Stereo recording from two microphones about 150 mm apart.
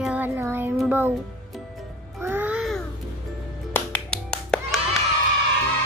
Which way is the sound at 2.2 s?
10° right (ahead or behind).